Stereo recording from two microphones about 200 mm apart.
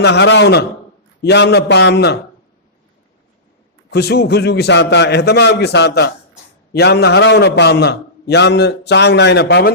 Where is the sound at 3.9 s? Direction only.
55° left (ahead or behind).